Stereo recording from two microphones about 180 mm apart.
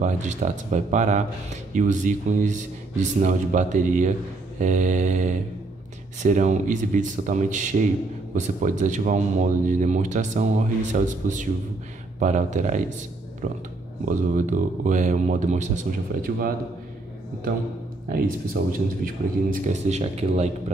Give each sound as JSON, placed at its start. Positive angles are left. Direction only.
{"t": 0.0, "sound": "speech", "side_deg": -40}
{"t": 18.1, "sound": "speech", "side_deg": -55}
{"t": 19.5, "sound": "speech", "side_deg": -40}